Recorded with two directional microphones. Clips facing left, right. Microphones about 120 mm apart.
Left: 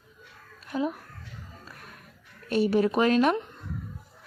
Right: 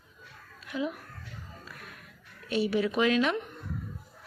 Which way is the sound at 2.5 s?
45° left (ahead or behind).